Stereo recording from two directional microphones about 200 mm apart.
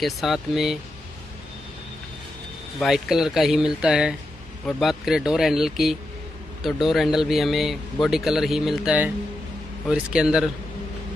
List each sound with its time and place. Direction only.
0.0 s a man's voice: centre (ahead or behind)
2.8 s a man's voice: centre (ahead or behind)